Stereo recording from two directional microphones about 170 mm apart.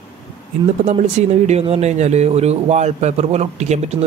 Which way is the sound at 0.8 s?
40° right (ahead or behind).